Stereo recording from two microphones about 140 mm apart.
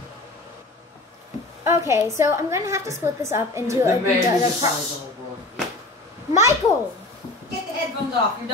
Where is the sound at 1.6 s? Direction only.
20° right (ahead or behind).